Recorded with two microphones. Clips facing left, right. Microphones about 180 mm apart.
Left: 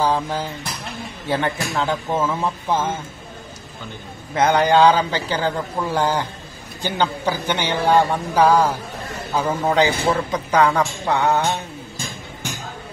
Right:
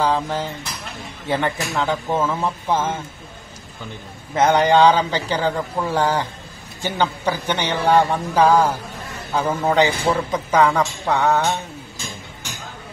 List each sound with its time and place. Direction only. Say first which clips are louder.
0.0 s music: even; 10° left (ahead or behind)
1.3 s a man's voice: even; 5° left (ahead or behind)
4.4 s a man's voice: right 1 dB; 5° left (ahead or behind)
4.9 s speech: right 1 dB; 20° right (ahead or behind)
5.8 s a man's voice: even; centre (ahead or behind)
10.8 s music: even; 5° left (ahead or behind)